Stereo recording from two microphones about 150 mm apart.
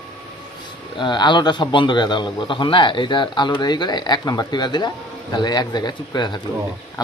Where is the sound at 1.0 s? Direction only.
30° left (ahead or behind).